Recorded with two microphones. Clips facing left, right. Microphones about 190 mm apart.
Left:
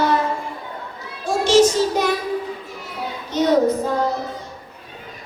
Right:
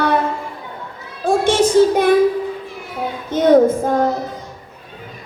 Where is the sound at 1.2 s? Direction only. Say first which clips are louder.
Even; 55° right (ahead or behind).